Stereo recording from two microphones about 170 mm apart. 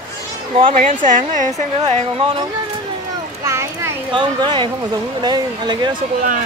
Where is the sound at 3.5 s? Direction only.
15° right (ahead or behind).